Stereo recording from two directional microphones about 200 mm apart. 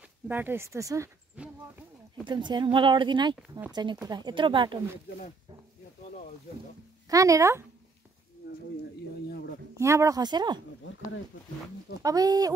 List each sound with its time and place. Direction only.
0.3 s speech: 10° right (ahead or behind)
2.2 s speech: 20° right (ahead or behind)
7.1 s speech: 15° right (ahead or behind)
9.8 s speech: 15° right (ahead or behind)
12.0 s speech: 20° right (ahead or behind)